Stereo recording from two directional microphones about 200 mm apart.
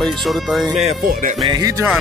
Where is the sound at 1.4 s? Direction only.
20° right (ahead or behind).